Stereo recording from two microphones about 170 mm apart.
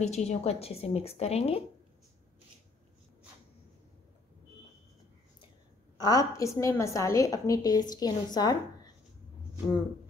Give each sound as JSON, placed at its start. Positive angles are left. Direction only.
{"t": 0.0, "sound": "a woman's voice", "side_deg": 40}
{"t": 5.9, "sound": "a woman's voice", "side_deg": 20}